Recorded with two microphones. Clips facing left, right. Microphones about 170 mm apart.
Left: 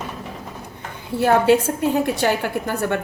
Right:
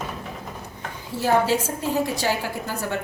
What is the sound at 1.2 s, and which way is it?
A woman's voice, 60° left (ahead or behind).